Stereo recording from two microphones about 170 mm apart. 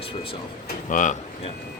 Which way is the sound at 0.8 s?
50° left (ahead or behind).